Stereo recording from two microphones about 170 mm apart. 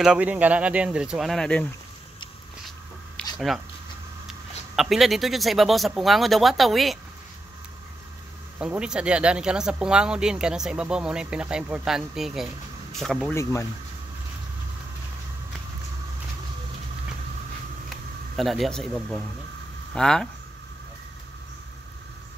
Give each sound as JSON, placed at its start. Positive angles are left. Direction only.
{"t": 0.0, "sound": "speech", "side_deg": -5}
{"t": 3.3, "sound": "speech", "side_deg": 0}
{"t": 4.7, "sound": "speech", "side_deg": 0}
{"t": 8.5, "sound": "speech", "side_deg": -5}
{"t": 13.3, "sound": "speech", "side_deg": 20}
{"t": 17.8, "sound": "speech", "side_deg": 0}